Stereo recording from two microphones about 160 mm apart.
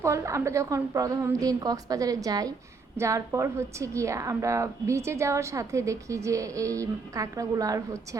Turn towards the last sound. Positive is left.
turn(degrees=-20)  # may be behind; listen again after turning